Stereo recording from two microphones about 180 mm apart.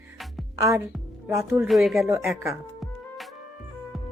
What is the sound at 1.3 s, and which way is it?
Speech, 15° right (ahead or behind).